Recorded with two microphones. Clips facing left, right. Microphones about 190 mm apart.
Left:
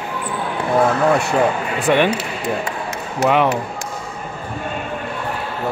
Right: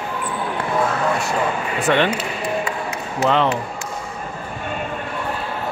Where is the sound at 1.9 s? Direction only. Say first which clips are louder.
Left 2 dB; 15° left (ahead or behind).